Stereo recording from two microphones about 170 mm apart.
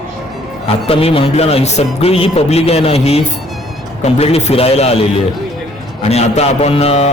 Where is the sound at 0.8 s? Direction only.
35° left (ahead or behind).